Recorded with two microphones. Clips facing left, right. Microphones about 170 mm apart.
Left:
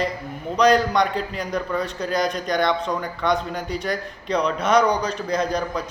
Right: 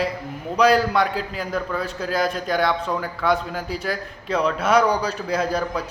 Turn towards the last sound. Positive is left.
turn(degrees=-5)  # may be behind; listen again after turning